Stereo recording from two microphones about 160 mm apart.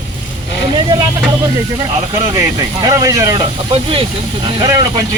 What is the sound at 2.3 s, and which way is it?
Speech, 20° right (ahead or behind).